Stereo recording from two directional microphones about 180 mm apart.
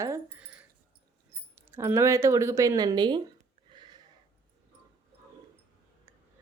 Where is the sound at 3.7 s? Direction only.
25° right (ahead or behind).